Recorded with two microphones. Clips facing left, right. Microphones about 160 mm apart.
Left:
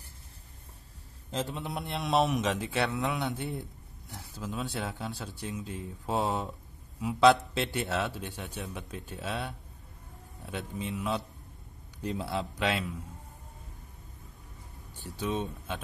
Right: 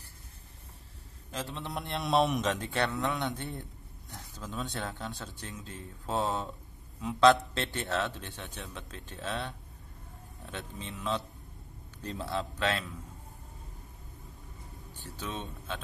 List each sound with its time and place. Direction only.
1.3 s a man's voice: 20° left (ahead or behind)
1.6 s a man's voice: centre (ahead or behind)
15.0 s a man's voice: 15° left (ahead or behind)